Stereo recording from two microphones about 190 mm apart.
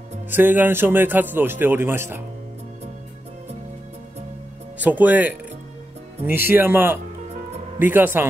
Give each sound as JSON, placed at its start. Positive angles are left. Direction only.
{"t": 0.3, "sound": "a man's voice", "side_deg": -10}
{"t": 4.8, "sound": "a man's voice", "side_deg": -10}
{"t": 6.5, "sound": "a man's voice", "side_deg": -10}